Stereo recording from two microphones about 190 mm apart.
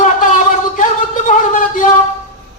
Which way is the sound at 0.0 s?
40° left (ahead or behind).